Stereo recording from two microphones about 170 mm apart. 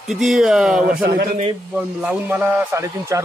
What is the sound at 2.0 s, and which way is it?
A man's voice, 10° right (ahead or behind).